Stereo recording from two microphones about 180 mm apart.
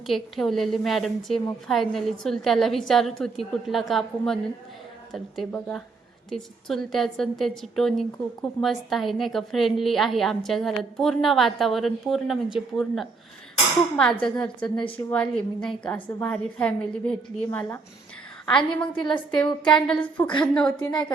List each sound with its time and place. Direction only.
0.1 s a woman's voice: centre (ahead or behind)
18.8 s a woman's voice: 25° left (ahead or behind)
19.4 s a woman's voice: 5° left (ahead or behind)
20.7 s a woman's voice: 25° left (ahead or behind)